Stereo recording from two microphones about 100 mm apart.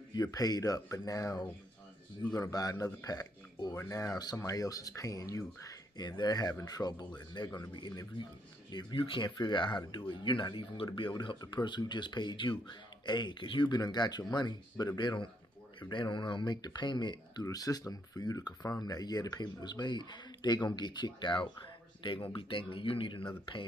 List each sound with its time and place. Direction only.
0.1 s speech: 40° left (ahead or behind)
2.5 s a man's voice: 40° left (ahead or behind); by 23.2 s 60° left (ahead or behind)